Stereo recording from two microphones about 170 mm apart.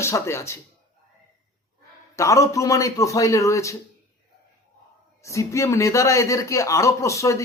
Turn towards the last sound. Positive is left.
turn(degrees=20)  # may be behind; listen again after turning